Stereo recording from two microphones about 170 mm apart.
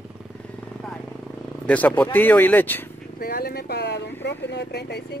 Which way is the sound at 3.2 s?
60° left (ahead or behind).